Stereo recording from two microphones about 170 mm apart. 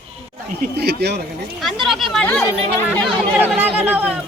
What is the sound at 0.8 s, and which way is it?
Speech, 75° right (ahead or behind).